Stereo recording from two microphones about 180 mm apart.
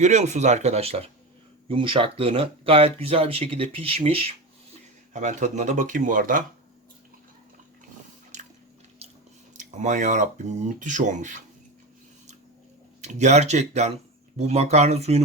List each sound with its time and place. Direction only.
0.0 s speech: 40° right (ahead or behind)
9.0 s chewing: 35° right (ahead or behind)
9.6 s speech: 45° right (ahead or behind)
13.0 s speech: 40° right (ahead or behind)